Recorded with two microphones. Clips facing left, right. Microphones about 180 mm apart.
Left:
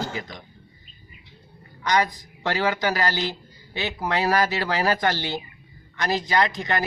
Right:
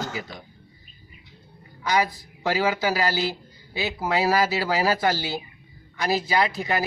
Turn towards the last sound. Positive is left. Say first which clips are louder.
# even
turn(degrees=-5)  # may be behind; listen again after turning